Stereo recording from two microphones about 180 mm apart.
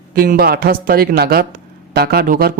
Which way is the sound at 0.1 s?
55° right (ahead or behind).